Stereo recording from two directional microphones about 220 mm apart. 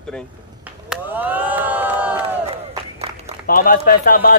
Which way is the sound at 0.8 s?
5° right (ahead or behind).